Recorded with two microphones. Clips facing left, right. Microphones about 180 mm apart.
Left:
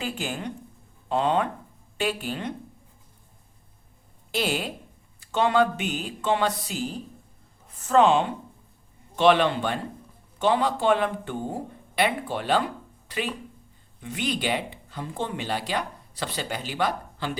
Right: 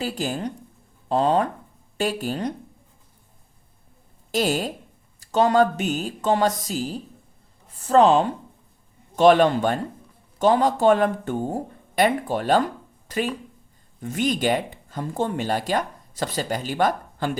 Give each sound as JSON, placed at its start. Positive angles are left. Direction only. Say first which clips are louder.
{"t": 0.0, "sound": "speech", "louder": "right 4 dB", "side_deg": -40}
{"t": 4.3, "sound": "a woman's voice", "louder": "right 4 dB", "side_deg": -40}